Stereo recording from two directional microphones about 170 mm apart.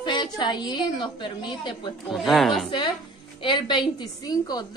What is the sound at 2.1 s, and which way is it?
Speech, centre (ahead or behind).